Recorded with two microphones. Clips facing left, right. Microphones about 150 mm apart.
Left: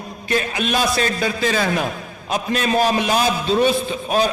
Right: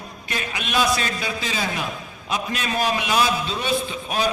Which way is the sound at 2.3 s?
40° left (ahead or behind).